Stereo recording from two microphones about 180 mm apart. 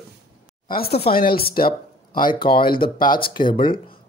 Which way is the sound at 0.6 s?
60° left (ahead or behind).